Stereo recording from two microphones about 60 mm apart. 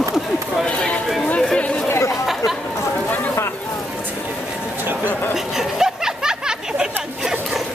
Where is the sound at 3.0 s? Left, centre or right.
Left.